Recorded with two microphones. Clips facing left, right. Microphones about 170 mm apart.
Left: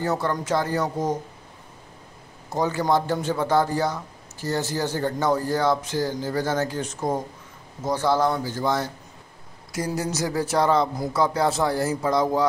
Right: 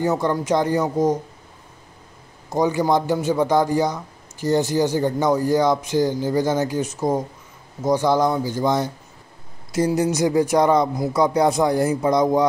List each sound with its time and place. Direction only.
0.0 s a man's voice: 15° right (ahead or behind)
2.5 s a man's voice: 15° right (ahead or behind)